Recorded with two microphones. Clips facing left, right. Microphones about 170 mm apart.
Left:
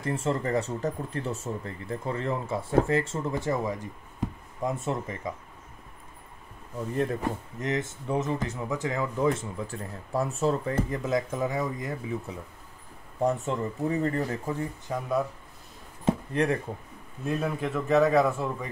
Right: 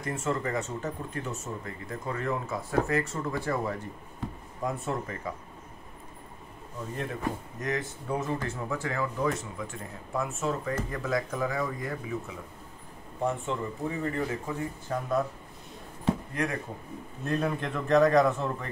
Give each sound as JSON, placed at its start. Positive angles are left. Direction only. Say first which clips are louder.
{"t": 0.0, "sound": "speech", "louder": "left 2 dB", "side_deg": 30}
{"t": 4.2, "sound": "a sound", "louder": "left 5 dB", "side_deg": 15}
{"t": 4.6, "sound": "speech", "louder": "left 2 dB", "side_deg": 20}
{"t": 7.6, "sound": "speech", "louder": "left 2 dB", "side_deg": 25}
{"t": 9.7, "sound": "speech", "louder": "left 3 dB", "side_deg": 35}
{"t": 12.3, "sound": "speech", "louder": "left 2 dB", "side_deg": 35}
{"t": 14.9, "sound": "speech", "louder": "even", "side_deg": 10}
{"t": 16.1, "sound": "a sound", "louder": "left 4 dB", "side_deg": 30}
{"t": 17.2, "sound": "a man's voice", "louder": "left 1 dB", "side_deg": 5}